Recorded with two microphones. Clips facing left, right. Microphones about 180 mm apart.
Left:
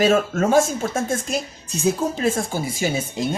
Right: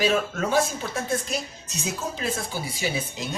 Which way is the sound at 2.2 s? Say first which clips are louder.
Left 7 dB; 45° left (ahead or behind).